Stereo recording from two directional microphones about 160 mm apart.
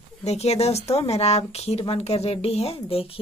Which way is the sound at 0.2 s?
40° left (ahead or behind).